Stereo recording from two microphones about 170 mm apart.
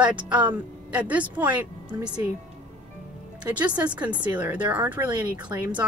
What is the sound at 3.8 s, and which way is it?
Speech, 25° right (ahead or behind).